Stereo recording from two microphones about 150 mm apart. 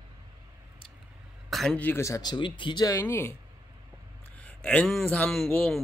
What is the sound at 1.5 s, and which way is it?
Speech, 5° left (ahead or behind).